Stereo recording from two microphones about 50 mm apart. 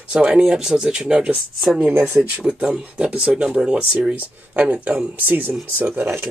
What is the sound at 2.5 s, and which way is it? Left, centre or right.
Speech, centre.